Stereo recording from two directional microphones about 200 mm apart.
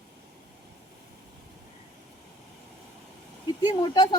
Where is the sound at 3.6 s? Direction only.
20° left (ahead or behind).